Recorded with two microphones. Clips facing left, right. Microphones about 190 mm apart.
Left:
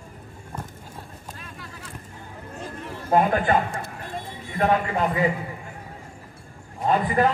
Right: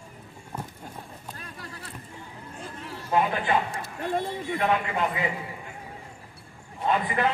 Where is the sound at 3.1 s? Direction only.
45° left (ahead or behind).